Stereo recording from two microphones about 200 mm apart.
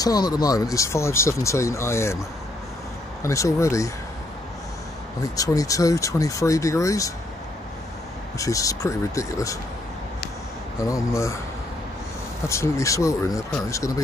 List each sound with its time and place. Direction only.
0.0 s speech: 20° left (ahead or behind)
3.3 s speech: 15° left (ahead or behind)
5.2 s speech: 15° left (ahead or behind)
8.4 s speech: 15° left (ahead or behind)
10.9 s speech: 15° left (ahead or behind)
12.4 s speech: 15° left (ahead or behind)